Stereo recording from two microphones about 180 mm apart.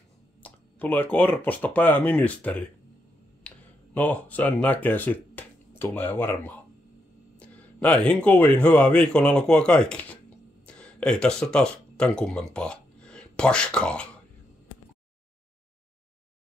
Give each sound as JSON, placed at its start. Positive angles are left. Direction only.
{"t": 0.4, "sound": "speech", "side_deg": 10}
{"t": 3.4, "sound": "a sound", "side_deg": 10}
{"t": 4.8, "sound": "speech", "side_deg": 10}